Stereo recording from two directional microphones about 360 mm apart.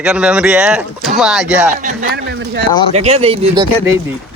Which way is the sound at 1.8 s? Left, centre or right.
Right.